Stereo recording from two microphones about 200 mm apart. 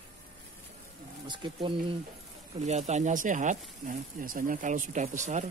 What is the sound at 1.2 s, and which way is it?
Speech, 25° right (ahead or behind).